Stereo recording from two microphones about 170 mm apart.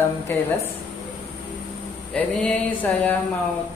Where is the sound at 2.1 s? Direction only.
10° left (ahead or behind).